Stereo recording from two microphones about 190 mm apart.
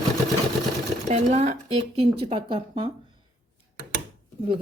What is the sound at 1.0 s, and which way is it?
Speech, 35° right (ahead or behind).